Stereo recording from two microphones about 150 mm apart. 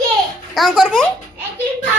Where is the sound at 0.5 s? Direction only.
Centre (ahead or behind).